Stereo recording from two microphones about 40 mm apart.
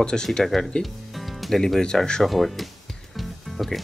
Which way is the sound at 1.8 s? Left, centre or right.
Centre.